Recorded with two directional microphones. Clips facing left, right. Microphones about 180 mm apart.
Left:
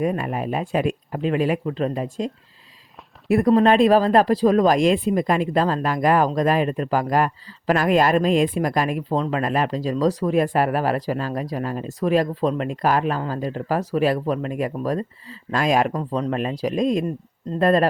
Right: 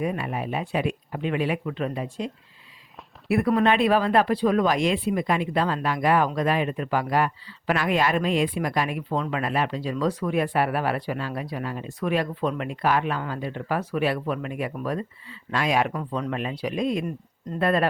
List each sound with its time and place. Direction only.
0.0 s speech: 45° left (ahead or behind)